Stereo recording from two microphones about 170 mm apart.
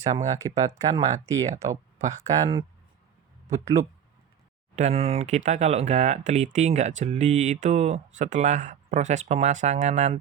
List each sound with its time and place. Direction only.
0.0 s speech: 40° right (ahead or behind)
0.3 s speech: 20° right (ahead or behind)
2.0 s speech: 45° right (ahead or behind)
3.4 s speech: 20° right (ahead or behind)
4.7 s speech: 40° right (ahead or behind)